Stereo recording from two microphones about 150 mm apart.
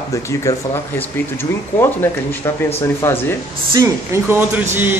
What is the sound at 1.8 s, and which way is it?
Speech, 15° left (ahead or behind).